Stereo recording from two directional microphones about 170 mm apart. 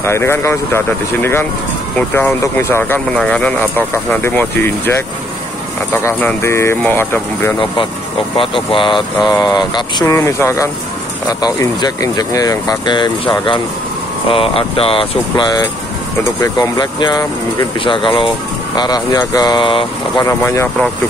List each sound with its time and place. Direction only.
0.0 s speech: 15° left (ahead or behind)
6.0 s speech: 15° left (ahead or behind)
8.4 s speech: 30° left (ahead or behind)
20.2 s speech: 15° left (ahead or behind)